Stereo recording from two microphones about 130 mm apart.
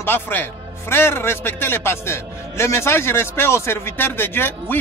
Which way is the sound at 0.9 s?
20° left (ahead or behind).